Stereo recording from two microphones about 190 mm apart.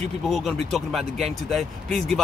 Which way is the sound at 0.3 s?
Centre (ahead or behind).